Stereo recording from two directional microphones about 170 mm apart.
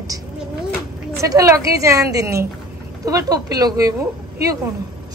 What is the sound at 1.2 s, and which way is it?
A woman's voice, 20° right (ahead or behind).